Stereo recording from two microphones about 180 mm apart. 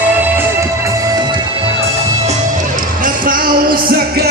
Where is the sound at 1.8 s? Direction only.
35° right (ahead or behind).